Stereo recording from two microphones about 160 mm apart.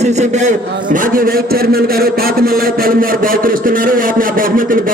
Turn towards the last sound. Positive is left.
turn(degrees=-60)  # may be behind; listen again after turning